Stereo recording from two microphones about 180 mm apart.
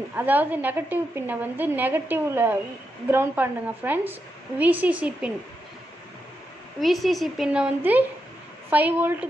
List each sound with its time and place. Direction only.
0.1 s a woman's voice: 10° right (ahead or behind)
6.8 s a woman's voice: centre (ahead or behind)